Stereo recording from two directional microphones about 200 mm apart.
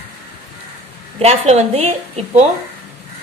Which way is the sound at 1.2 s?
30° right (ahead or behind).